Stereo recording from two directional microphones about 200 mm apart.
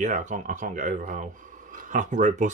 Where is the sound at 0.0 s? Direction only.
40° right (ahead or behind).